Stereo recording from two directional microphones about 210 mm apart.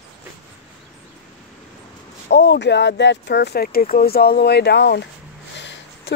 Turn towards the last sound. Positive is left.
turn(degrees=55)  # may be behind; listen again after turning